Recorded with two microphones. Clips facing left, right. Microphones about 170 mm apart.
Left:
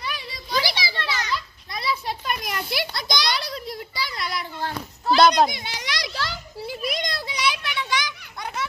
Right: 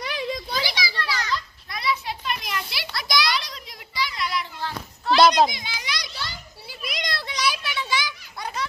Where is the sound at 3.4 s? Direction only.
35° left (ahead or behind).